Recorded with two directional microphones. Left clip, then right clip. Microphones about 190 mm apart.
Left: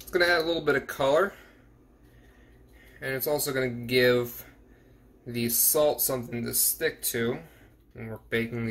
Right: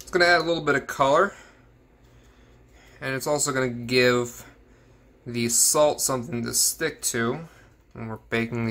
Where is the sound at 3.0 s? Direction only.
30° right (ahead or behind).